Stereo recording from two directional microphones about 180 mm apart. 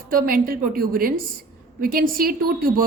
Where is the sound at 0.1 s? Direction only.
50° right (ahead or behind).